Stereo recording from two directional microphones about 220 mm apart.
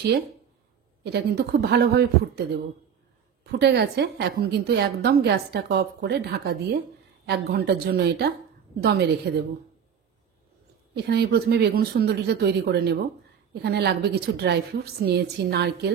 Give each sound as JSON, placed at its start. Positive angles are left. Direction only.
{"t": 1.0, "sound": "a woman's voice", "side_deg": -50}
{"t": 11.0, "sound": "a woman's voice", "side_deg": -45}